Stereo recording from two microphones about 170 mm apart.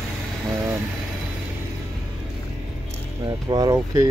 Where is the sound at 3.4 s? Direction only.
25° right (ahead or behind).